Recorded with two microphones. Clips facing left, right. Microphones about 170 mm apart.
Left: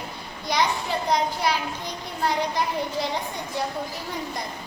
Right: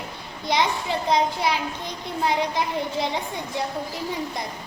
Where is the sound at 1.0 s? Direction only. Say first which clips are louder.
Right 2 dB; 25° right (ahead or behind).